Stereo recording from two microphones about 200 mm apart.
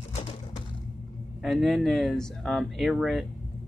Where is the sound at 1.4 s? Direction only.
Centre (ahead or behind).